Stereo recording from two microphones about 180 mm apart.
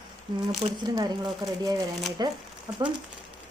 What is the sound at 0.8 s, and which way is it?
Speech, 20° right (ahead or behind).